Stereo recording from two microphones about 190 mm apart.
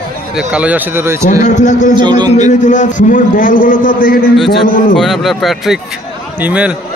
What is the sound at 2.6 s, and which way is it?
A man's voice, 40° left (ahead or behind).